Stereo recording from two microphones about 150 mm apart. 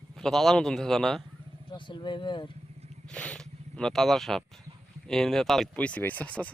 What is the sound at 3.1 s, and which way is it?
Speech, 5° left (ahead or behind).